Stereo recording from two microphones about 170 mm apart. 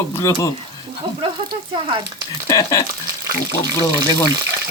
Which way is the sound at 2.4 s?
20° left (ahead or behind).